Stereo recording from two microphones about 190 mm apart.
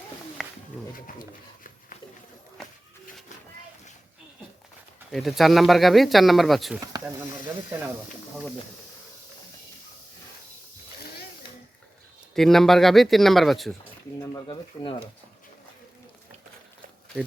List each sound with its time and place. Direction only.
0.4 s a sound: centre (ahead or behind)
0.9 s dog: 45° left (ahead or behind)
2.6 s a sound: 5° left (ahead or behind)
5.1 s speech: centre (ahead or behind)
12.3 s speech: centre (ahead or behind)
14.2 s speech: 25° left (ahead or behind)